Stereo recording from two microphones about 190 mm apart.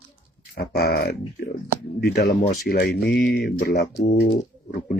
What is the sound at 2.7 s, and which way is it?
Speech, 50° left (ahead or behind).